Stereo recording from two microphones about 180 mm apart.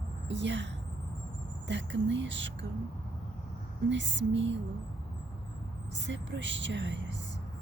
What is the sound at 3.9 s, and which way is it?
Speech, 90° right.